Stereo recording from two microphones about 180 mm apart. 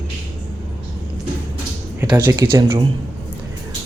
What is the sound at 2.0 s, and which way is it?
Speech, 15° right (ahead or behind).